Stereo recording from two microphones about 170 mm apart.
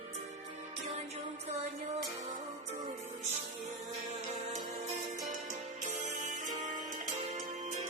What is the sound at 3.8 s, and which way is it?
Music, 45° right (ahead or behind).